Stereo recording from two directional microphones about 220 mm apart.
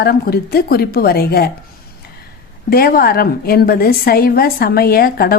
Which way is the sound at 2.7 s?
40° left (ahead or behind).